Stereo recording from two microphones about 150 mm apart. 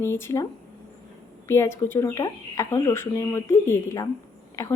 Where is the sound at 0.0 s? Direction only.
15° left (ahead or behind).